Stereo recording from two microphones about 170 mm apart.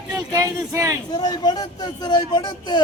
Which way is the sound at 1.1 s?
25° left (ahead or behind).